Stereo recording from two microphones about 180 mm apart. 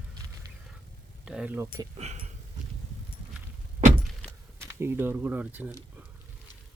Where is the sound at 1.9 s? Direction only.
40° right (ahead or behind).